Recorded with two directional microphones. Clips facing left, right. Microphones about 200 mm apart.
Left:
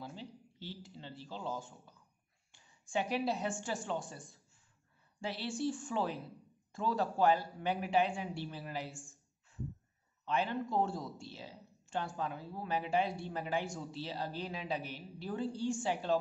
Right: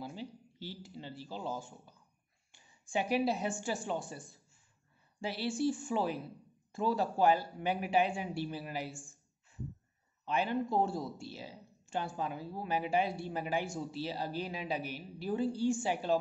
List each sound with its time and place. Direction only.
0.0 s a sound: 10° right (ahead or behind)
2.5 s a woman's voice: 10° right (ahead or behind)
10.2 s speech: 10° right (ahead or behind)